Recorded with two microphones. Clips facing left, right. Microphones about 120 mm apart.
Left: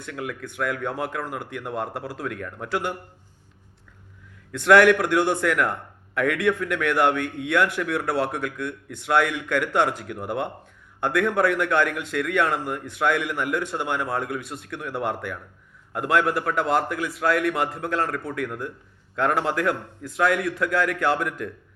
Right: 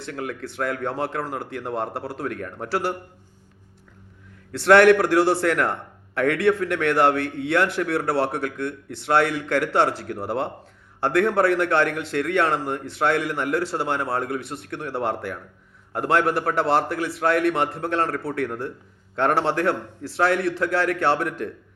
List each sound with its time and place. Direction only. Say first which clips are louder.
0.0 s a man's voice: right 2 dB; 30° right (ahead or behind)
4.5 s a man's voice: right 2 dB; 30° right (ahead or behind)